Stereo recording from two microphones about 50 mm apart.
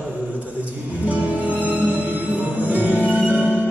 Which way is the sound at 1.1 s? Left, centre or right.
Right.